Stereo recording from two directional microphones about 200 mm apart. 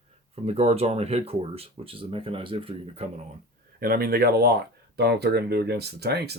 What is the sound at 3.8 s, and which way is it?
Speech, 50° right (ahead or behind).